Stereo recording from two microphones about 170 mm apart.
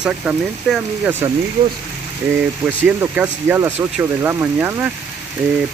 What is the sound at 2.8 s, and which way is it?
Speech, 10° right (ahead or behind).